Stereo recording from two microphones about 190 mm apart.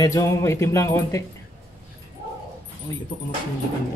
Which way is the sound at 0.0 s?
15° left (ahead or behind).